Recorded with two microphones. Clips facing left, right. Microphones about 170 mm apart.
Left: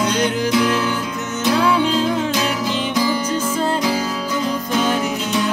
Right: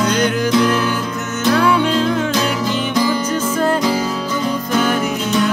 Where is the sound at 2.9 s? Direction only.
10° left (ahead or behind).